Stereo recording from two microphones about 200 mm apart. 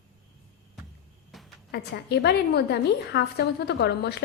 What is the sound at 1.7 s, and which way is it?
A woman's voice, 55° left (ahead or behind).